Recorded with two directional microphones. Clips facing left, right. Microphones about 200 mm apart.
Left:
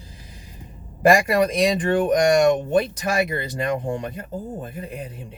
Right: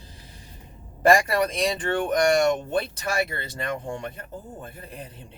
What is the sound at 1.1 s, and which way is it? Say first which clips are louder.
Speech: left 4 dB; 15° left (ahead or behind).